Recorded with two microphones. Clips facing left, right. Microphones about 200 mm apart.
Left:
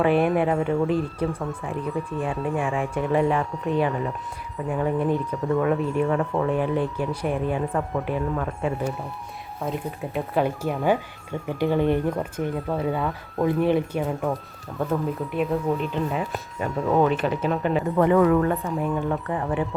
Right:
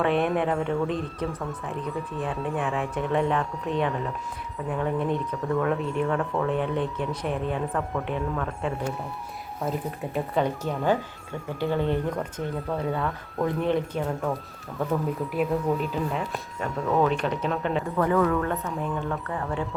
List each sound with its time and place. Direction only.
0.0 s speech: 5° left (ahead or behind)
17.9 s speech: 20° left (ahead or behind)